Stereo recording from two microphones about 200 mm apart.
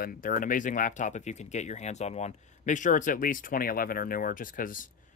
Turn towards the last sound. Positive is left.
turn(degrees=45)  # may be behind; listen again after turning